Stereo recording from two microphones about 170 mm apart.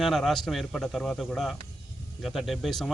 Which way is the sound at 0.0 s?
Centre (ahead or behind).